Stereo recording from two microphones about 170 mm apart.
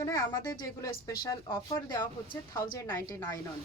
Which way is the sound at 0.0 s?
20° left (ahead or behind).